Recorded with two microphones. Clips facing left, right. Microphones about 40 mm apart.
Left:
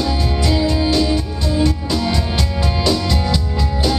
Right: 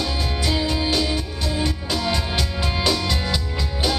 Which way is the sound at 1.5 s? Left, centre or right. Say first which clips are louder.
Left 7 dB; centre.